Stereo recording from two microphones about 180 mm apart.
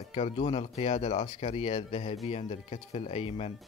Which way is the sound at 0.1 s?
35° left (ahead or behind).